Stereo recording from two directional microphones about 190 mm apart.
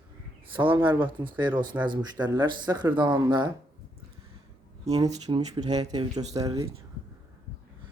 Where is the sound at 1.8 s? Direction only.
25° right (ahead or behind).